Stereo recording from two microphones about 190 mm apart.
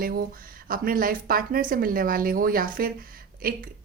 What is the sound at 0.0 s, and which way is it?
A woman's voice, 50° right (ahead or behind).